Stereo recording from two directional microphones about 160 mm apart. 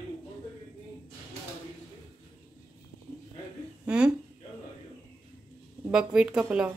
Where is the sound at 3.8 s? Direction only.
5° right (ahead or behind).